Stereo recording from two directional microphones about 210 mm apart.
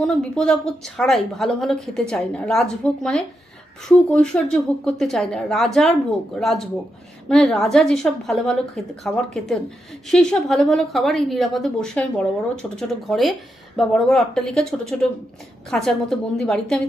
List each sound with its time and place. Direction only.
0.0 s a woman's voice: 5° left (ahead or behind)